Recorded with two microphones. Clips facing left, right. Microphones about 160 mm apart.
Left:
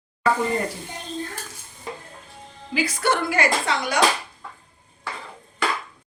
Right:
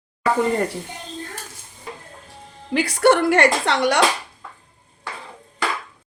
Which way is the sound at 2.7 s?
70° right (ahead or behind).